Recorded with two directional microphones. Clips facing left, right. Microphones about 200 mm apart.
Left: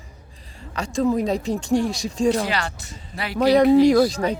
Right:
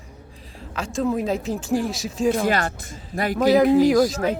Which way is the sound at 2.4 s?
50° right (ahead or behind).